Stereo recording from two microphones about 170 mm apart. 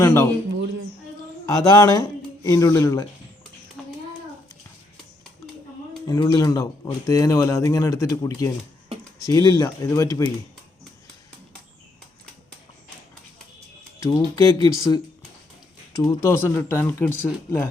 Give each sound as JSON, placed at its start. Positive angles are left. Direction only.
{"t": 0.0, "sound": "speech", "side_deg": 15}
{"t": 1.5, "sound": "speech", "side_deg": 20}
{"t": 3.8, "sound": "a sound", "side_deg": 0}
{"t": 6.1, "sound": "speech", "side_deg": 20}
{"t": 14.0, "sound": "speech", "side_deg": 20}
{"t": 15.9, "sound": "speech", "side_deg": 20}